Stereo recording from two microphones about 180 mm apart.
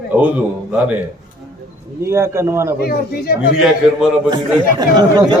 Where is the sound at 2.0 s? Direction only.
15° right (ahead or behind).